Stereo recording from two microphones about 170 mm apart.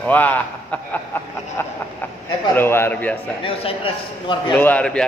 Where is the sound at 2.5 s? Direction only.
15° left (ahead or behind).